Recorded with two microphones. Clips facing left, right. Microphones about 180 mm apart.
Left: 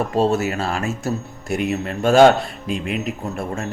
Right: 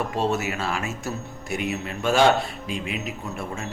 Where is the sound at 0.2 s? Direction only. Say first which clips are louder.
Left 7 dB; 35° left (ahead or behind).